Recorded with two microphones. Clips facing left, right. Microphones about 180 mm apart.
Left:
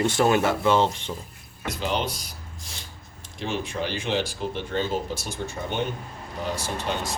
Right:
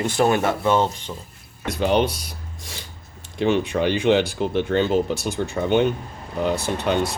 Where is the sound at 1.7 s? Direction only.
60° right (ahead or behind).